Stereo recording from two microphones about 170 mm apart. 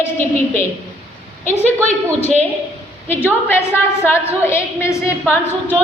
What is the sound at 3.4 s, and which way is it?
A woman's voice, 10° left (ahead or behind).